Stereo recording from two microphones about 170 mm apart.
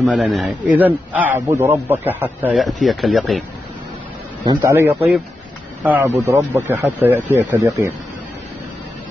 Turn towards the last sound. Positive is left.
turn(degrees=-15)  # may be behind; listen again after turning